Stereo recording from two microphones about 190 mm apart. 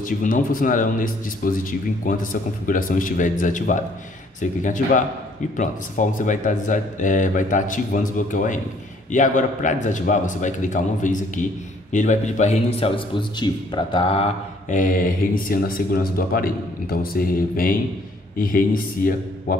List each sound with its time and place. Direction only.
0.0 s a man's voice: 45° left (ahead or behind)